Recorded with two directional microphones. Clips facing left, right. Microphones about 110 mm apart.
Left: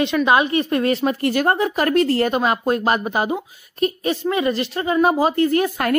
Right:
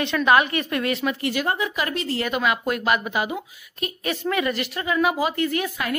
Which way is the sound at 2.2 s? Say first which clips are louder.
Left 4 dB; 35° left (ahead or behind).